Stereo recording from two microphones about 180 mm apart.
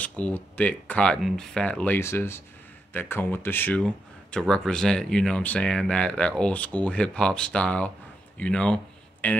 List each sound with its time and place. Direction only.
0.0 s speech: 10° left (ahead or behind)